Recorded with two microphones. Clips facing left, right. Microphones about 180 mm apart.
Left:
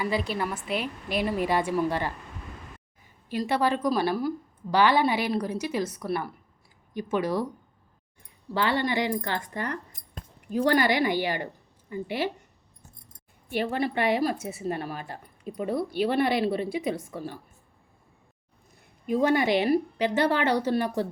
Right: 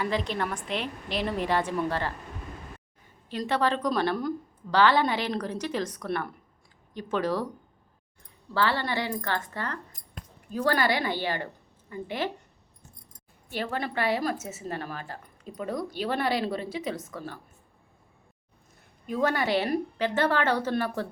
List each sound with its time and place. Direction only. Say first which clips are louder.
0.0 s a woman's voice: left 1 dB; 10° left (ahead or behind)
3.2 s a woman's voice: left 1 dB; 10° left (ahead or behind)
8.5 s a woman's voice: left 2 dB; 15° left (ahead or behind)
13.5 s a woman's voice: left 4 dB; 15° left (ahead or behind)
14.5 s speech: left 4 dB; 40° right (ahead or behind)
15.4 s a woman's voice: left 4 dB; 10° left (ahead or behind)
19.0 s a woman's voice: left 4 dB; 10° left (ahead or behind)